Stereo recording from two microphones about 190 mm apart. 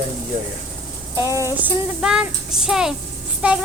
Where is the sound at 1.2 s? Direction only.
15° right (ahead or behind).